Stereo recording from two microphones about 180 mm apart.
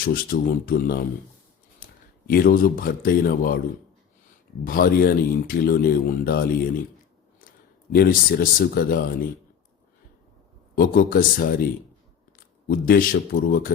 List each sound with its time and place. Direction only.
0.0 s a man's voice: 55° left (ahead or behind)
4.6 s speech: 50° left (ahead or behind)
7.9 s speech: 55° left (ahead or behind)
10.8 s speech: 50° left (ahead or behind)
12.6 s speech: 55° left (ahead or behind)